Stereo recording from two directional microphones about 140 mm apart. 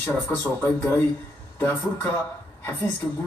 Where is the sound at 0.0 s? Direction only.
15° left (ahead or behind).